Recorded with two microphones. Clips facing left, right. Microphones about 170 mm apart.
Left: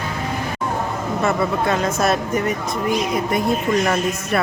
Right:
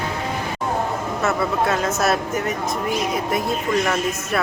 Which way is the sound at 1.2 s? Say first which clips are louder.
Left 1 dB; centre (ahead or behind).